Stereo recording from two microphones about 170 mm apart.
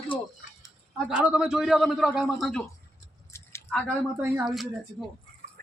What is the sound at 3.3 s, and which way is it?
Squish, 15° left (ahead or behind).